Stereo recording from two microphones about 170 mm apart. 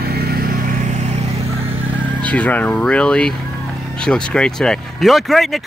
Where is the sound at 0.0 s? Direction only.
65° right (ahead or behind).